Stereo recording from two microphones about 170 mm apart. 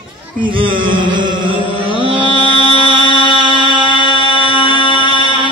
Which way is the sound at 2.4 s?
35° left (ahead or behind).